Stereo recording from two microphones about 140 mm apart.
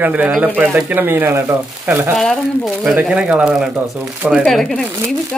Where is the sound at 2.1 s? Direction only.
Centre (ahead or behind).